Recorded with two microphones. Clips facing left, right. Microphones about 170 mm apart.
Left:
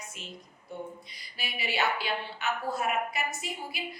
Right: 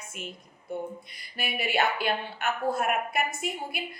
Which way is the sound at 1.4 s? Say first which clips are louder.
Right 4 dB; 50° right (ahead or behind).